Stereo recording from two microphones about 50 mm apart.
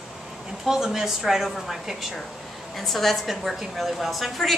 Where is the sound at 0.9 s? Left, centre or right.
Centre.